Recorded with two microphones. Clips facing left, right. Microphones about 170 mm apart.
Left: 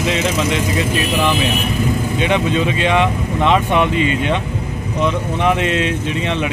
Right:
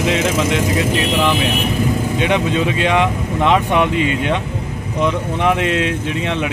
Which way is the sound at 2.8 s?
10° right (ahead or behind).